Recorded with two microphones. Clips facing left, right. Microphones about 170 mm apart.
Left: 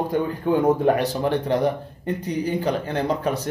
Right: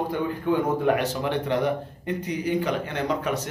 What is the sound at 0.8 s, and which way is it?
A man's voice, 35° left (ahead or behind).